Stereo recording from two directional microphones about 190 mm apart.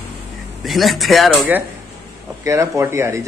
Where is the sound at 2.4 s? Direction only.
15° right (ahead or behind).